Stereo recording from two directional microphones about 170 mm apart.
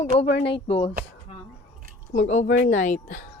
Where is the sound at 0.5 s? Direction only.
35° left (ahead or behind).